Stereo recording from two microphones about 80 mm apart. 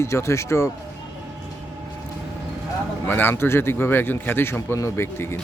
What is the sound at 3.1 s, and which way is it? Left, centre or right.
Speech, left.